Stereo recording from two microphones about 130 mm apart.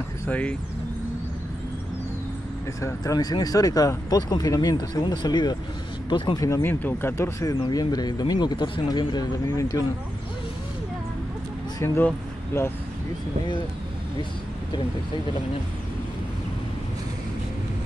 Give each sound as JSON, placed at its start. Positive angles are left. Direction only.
{"t": 0.3, "sound": "speech", "side_deg": 10}
{"t": 2.8, "sound": "speech", "side_deg": 25}
{"t": 6.4, "sound": "speech", "side_deg": 20}
{"t": 11.8, "sound": "speech", "side_deg": 20}